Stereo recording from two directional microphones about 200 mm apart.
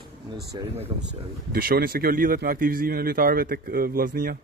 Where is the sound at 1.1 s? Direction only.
50° right (ahead or behind).